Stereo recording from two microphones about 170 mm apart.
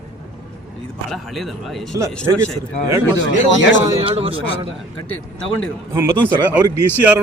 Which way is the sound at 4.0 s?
35° right (ahead or behind).